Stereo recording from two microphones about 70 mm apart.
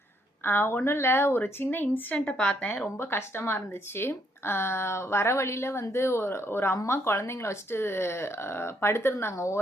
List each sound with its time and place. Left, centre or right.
0.4 s speech: left
2.1 s speech: centre
2.8 s speech: left